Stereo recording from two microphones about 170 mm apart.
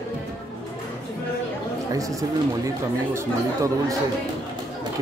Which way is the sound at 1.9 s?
20° right (ahead or behind).